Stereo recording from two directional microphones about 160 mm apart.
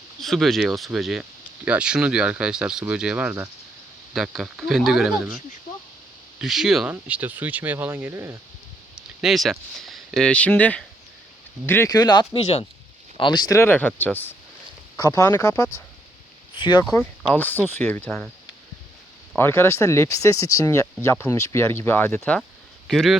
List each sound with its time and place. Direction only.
0.2 s speech: centre (ahead or behind)
6.4 s speech: centre (ahead or behind)
9.0 s speech: centre (ahead or behind); by 15.8 s 20° left (ahead or behind)
16.6 s speech: 30° left (ahead or behind)
17.0 s speech: 10° left (ahead or behind)
19.4 s speech: 15° left (ahead or behind)
22.9 s speech: centre (ahead or behind)